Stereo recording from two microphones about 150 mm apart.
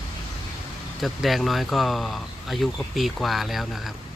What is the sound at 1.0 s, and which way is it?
Speech, centre (ahead or behind).